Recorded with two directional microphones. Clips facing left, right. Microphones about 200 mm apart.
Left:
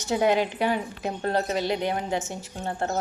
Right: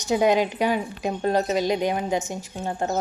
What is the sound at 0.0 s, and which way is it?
Speech, 15° right (ahead or behind).